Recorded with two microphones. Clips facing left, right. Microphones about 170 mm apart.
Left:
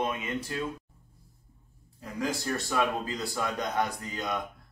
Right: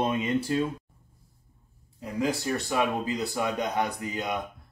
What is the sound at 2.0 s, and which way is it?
A man's voice, 15° right (ahead or behind).